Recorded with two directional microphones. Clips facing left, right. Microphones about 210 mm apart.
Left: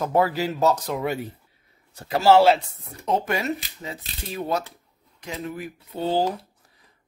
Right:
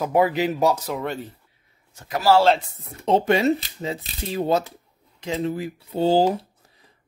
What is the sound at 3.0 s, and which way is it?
Speech, 25° right (ahead or behind).